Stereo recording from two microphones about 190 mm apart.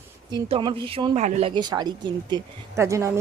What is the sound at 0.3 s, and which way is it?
A woman's voice, 25° right (ahead or behind).